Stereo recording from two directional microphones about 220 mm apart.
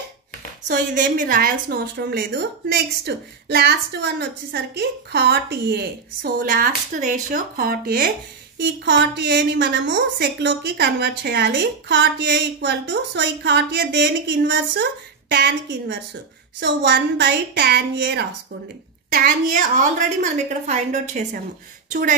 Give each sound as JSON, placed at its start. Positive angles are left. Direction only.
{"t": 0.7, "sound": "a woman's voice", "side_deg": -35}
{"t": 8.5, "sound": "a woman's voice", "side_deg": -55}